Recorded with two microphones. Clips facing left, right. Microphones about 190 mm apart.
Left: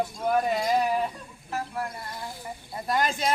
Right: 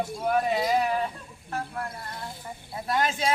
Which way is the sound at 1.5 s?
5° left (ahead or behind).